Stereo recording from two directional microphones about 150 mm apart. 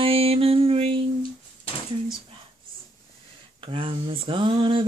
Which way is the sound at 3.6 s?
35° right (ahead or behind).